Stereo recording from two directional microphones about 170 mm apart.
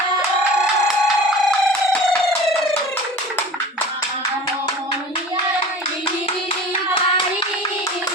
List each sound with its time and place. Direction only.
1.0 s music: centre (ahead or behind)
6.9 s hands: 30° left (ahead or behind)